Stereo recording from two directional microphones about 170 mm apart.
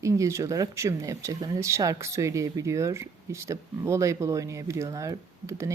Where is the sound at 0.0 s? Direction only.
20° right (ahead or behind).